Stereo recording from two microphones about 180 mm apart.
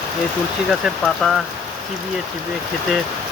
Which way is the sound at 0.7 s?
Centre (ahead or behind).